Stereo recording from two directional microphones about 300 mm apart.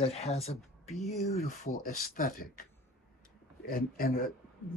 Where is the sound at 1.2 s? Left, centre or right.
Left.